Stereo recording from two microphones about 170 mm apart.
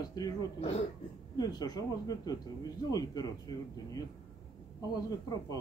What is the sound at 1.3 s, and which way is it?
Speech, 25° left (ahead or behind).